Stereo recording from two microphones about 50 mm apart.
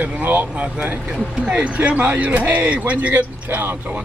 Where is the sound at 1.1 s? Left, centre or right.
Centre.